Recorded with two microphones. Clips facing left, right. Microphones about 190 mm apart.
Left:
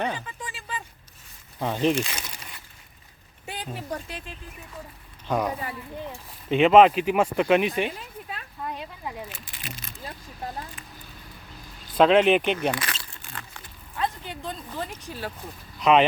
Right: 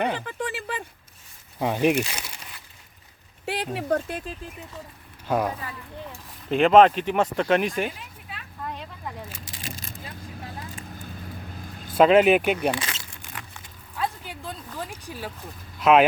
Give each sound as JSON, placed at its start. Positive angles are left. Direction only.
{"t": 0.1, "sound": "speech", "side_deg": -65}
{"t": 1.5, "sound": "speech", "side_deg": -15}
{"t": 3.4, "sound": "a sound", "side_deg": -75}
{"t": 3.8, "sound": "speech", "side_deg": -60}
{"t": 5.3, "sound": "speech", "side_deg": -5}
{"t": 6.5, "sound": "speech", "side_deg": 0}
{"t": 7.9, "sound": "a sound", "side_deg": 40}
{"t": 8.6, "sound": "speech", "side_deg": 5}
{"t": 9.4, "sound": "a sound", "side_deg": -40}
{"t": 11.9, "sound": "speech", "side_deg": -5}
{"t": 12.8, "sound": "keys jangling", "side_deg": -20}
{"t": 13.9, "sound": "a sound", "side_deg": -5}
{"t": 14.8, "sound": "speech", "side_deg": -10}